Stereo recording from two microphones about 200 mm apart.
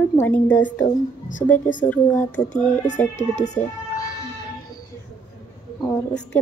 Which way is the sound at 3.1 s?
35° left (ahead or behind).